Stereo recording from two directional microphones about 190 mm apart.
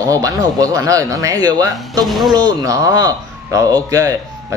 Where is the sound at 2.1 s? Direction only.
Centre (ahead or behind).